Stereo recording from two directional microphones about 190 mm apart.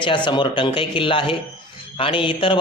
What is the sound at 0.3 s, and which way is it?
A man's voice, 25° left (ahead or behind).